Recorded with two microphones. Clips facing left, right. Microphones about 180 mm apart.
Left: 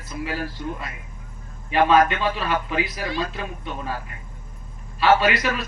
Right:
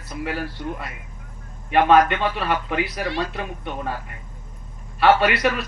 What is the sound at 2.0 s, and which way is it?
A man's voice, 60° right (ahead or behind).